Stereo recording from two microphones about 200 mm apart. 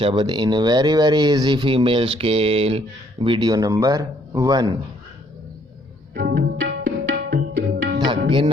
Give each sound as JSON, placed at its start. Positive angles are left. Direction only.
{"t": 0.0, "sound": "speech", "side_deg": -25}
{"t": 6.1, "sound": "tabla", "side_deg": -50}
{"t": 7.9, "sound": "music", "side_deg": -25}